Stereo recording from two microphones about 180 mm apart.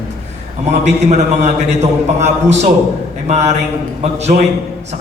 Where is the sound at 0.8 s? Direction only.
40° right (ahead or behind).